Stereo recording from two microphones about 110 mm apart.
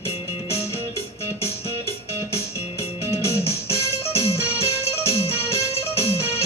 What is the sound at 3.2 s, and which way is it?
Music, 25° left (ahead or behind).